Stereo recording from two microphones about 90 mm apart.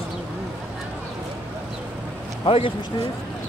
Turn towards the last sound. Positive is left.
turn(degrees=70)  # may be behind; listen again after turning